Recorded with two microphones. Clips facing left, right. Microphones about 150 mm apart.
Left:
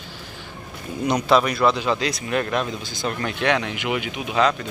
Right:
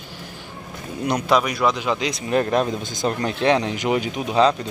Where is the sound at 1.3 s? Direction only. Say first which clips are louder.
Left 1 dB; 10° right (ahead or behind).